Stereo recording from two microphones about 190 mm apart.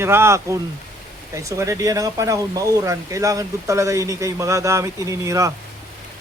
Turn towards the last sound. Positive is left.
turn(degrees=-15)  # may be behind; listen again after turning